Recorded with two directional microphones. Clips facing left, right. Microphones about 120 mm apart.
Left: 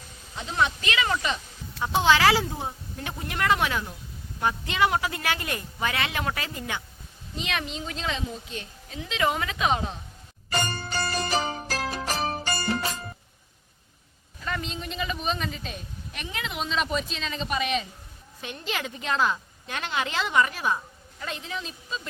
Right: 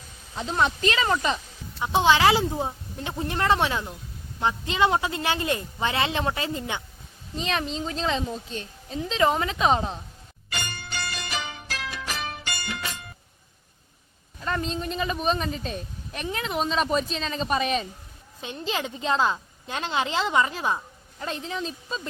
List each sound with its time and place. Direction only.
0.3 s a woman's voice: 35° right (ahead or behind)
1.8 s a woman's voice: 20° right (ahead or behind)
10.5 s music: 35° left (ahead or behind)
14.4 s a woman's voice: 35° right (ahead or behind)
18.4 s a woman's voice: 25° right (ahead or behind)